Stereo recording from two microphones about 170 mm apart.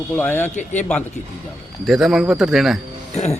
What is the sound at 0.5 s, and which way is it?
Speech, 45° left (ahead or behind).